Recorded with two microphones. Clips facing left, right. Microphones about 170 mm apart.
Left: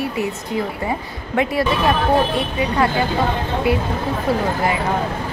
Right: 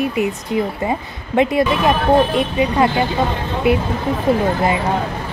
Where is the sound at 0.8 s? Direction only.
20° right (ahead or behind).